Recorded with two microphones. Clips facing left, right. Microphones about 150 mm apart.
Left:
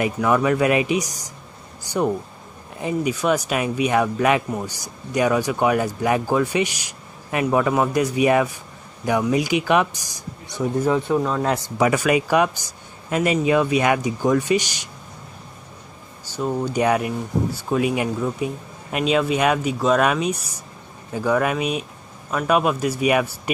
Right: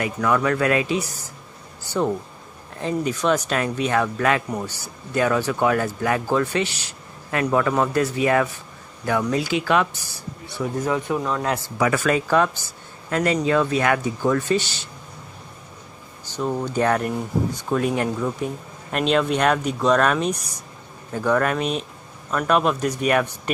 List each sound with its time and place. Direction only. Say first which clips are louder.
0.0 s speech: left 2 dB; 20° left (ahead or behind)
16.3 s speech: left 1 dB; 5° left (ahead or behind)